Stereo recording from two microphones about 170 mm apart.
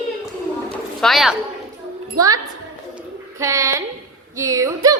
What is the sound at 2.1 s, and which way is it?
Speech, 20° right (ahead or behind).